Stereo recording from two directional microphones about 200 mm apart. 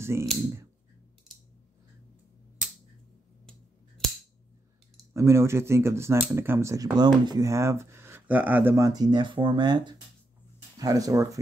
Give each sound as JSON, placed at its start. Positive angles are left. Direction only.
{"t": 0.0, "sound": "speech", "side_deg": -15}
{"t": 5.1, "sound": "speech", "side_deg": -15}